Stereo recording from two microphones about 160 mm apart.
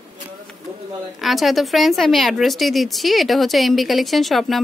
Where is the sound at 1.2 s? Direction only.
Centre (ahead or behind).